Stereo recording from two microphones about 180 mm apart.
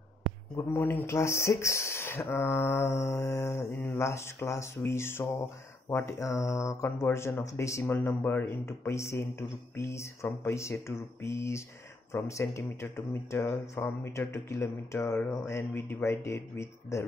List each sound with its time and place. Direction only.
0.6 s speech: 10° left (ahead or behind)